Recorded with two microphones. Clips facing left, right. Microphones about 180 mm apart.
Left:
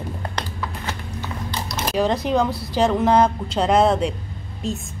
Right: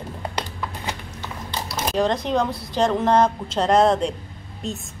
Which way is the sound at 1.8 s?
5° left (ahead or behind).